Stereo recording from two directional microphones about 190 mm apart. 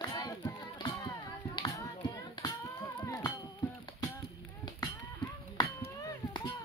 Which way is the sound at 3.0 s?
20° left (ahead or behind).